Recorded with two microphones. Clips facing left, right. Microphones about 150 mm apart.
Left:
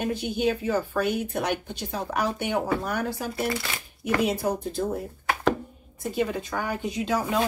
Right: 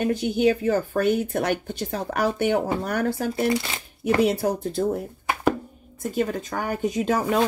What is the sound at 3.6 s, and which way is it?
Shuffling cards, 25° right (ahead or behind).